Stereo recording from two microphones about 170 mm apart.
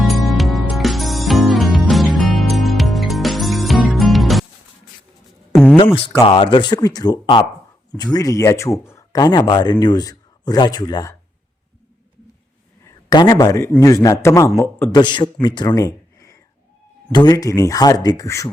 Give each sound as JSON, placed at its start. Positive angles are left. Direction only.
{"t": 0.0, "sound": "music", "side_deg": 0}
{"t": 5.7, "sound": "a man's voice", "side_deg": 30}
{"t": 13.1, "sound": "a man's voice", "side_deg": 20}